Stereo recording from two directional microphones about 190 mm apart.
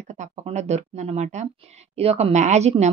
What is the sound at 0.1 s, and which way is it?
A woman's voice, 35° right (ahead or behind).